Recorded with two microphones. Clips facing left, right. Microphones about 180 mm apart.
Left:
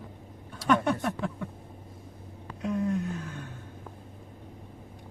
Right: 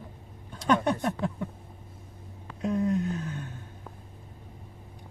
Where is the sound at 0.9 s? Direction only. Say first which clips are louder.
Right 1 dB; 20° right (ahead or behind).